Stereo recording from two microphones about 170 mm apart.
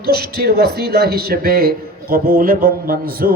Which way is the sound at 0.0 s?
65° right (ahead or behind).